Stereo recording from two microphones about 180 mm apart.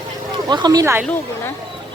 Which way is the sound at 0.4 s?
25° right (ahead or behind).